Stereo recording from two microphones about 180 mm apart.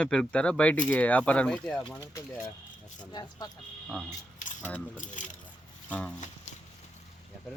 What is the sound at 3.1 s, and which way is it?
Speech, 25° left (ahead or behind).